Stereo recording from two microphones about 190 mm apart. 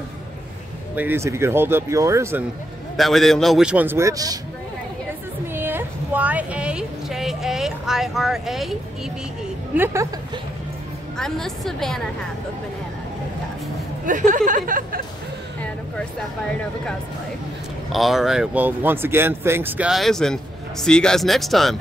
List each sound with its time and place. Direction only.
0.9 s speech: 10° right (ahead or behind)
3.0 s a man's voice: centre (ahead or behind); by 4.4 s 20° right (ahead or behind)
5.5 s a woman's voice: 10° right (ahead or behind)
11.1 s a man's voice: centre (ahead or behind)
14.0 s speech: 40° right (ahead or behind)
17.9 s a man's voice: centre (ahead or behind)